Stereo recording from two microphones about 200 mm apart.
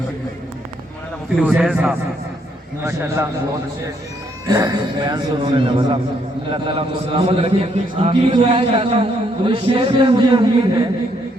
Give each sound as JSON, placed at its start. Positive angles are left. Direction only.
{"t": 1.4, "sound": "a man's voice", "side_deg": -5}
{"t": 4.4, "sound": "a man's voice", "side_deg": -20}